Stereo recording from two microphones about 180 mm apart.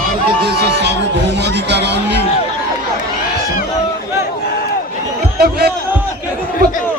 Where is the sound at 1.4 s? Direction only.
70° right (ahead or behind).